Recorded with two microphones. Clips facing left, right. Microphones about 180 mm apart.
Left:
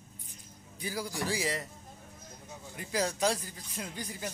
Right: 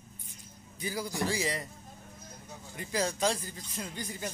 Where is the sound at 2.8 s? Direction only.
10° left (ahead or behind).